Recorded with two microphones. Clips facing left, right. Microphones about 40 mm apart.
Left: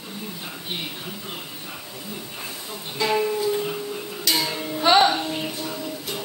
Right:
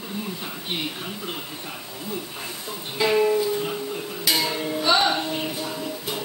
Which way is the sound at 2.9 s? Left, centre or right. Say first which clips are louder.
Right 3 dB; centre.